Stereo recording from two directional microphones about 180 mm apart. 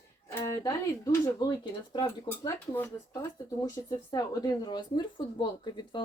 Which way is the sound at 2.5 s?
10° left (ahead or behind).